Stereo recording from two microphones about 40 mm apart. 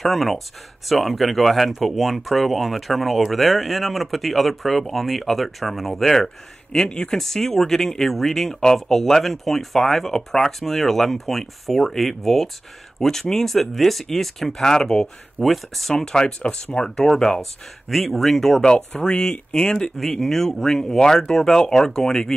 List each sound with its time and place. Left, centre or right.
0.0 s speech: centre; by 7.2 s left
7.2 s speech: centre
15.3 s speech: centre
15.9 s speech: centre
17.8 s speech: centre